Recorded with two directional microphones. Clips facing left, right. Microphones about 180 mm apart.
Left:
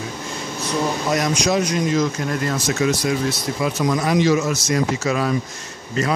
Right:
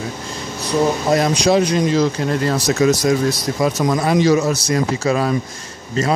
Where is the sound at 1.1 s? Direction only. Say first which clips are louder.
Right 4 dB; 30° right (ahead or behind).